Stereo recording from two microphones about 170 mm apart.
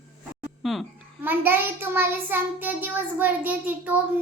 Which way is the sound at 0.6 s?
Centre (ahead or behind).